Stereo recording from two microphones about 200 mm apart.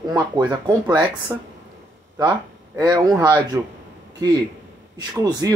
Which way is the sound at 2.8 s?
20° right (ahead or behind).